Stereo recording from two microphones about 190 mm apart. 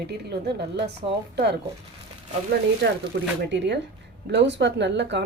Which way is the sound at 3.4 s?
65° right (ahead or behind).